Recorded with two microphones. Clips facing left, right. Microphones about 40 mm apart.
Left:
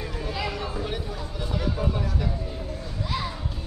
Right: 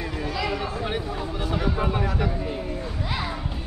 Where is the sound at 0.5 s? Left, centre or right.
Right.